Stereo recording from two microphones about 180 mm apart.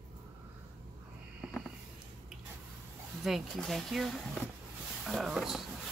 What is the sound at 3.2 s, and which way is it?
Speech, centre (ahead or behind).